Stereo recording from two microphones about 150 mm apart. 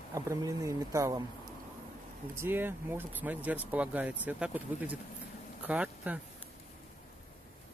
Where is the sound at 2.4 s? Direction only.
15° right (ahead or behind).